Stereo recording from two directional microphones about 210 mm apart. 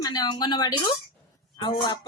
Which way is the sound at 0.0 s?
20° left (ahead or behind).